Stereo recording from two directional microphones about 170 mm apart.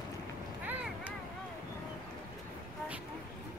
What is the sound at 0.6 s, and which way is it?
Vehicle, 10° right (ahead or behind).